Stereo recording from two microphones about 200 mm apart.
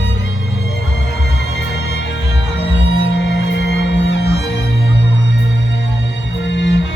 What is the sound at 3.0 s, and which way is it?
Music, 60° left (ahead or behind).